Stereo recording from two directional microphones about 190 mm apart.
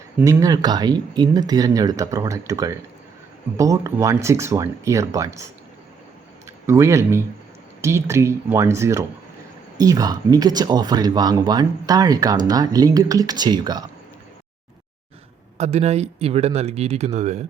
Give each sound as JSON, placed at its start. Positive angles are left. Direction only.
{"t": 0.2, "sound": "speech", "side_deg": -15}
{"t": 6.7, "sound": "speech", "side_deg": -15}
{"t": 15.5, "sound": "speech", "side_deg": -35}